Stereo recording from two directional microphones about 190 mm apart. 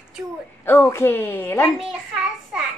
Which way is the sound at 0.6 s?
15° left (ahead or behind).